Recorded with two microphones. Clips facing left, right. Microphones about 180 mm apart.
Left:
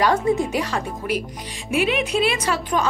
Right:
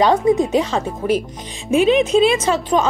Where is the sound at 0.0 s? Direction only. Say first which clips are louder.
Right 5 dB; 20° right (ahead or behind).